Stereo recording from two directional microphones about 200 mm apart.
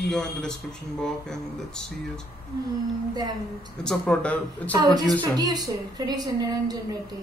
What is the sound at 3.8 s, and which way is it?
Speech, 5° left (ahead or behind).